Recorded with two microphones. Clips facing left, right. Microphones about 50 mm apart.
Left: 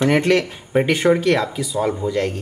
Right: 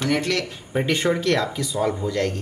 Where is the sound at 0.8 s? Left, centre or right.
Centre.